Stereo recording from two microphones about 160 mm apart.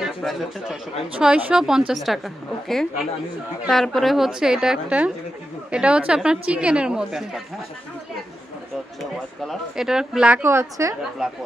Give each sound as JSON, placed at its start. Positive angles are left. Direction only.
{"t": 0.0, "sound": "a woman's voice", "side_deg": 0}
{"t": 9.4, "sound": "a woman's voice", "side_deg": 0}
{"t": 10.4, "sound": "a woman's voice", "side_deg": -15}
{"t": 11.2, "sound": "a woman's voice", "side_deg": -5}